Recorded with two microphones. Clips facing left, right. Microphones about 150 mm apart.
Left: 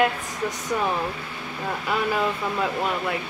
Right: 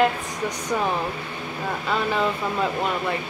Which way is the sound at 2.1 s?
5° left (ahead or behind).